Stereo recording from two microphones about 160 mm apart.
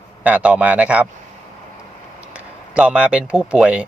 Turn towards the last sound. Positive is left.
turn(degrees=-5)  # may be behind; listen again after turning